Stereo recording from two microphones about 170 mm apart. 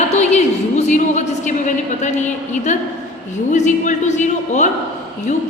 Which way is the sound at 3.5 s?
45° left (ahead or behind).